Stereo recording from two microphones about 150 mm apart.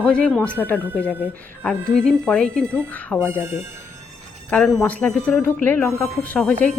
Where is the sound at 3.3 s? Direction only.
15° right (ahead or behind).